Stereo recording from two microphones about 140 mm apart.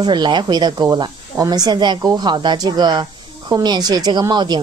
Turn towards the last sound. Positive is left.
turn(degrees=-30)  # may be behind; listen again after turning